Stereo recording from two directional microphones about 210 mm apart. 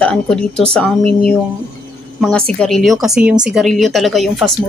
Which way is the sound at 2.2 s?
5° left (ahead or behind).